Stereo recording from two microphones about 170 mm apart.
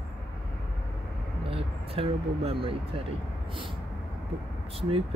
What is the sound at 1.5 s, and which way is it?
Speech, 35° right (ahead or behind).